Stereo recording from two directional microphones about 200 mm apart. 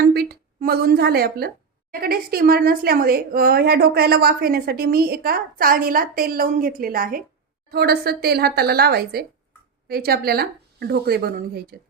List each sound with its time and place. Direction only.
0.0 s a woman's voice: 50° right (ahead or behind)